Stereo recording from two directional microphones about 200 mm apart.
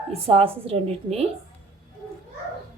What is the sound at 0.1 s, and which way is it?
A woman's voice, 30° right (ahead or behind).